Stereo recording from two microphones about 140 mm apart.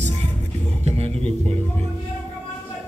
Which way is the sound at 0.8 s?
50° right (ahead or behind).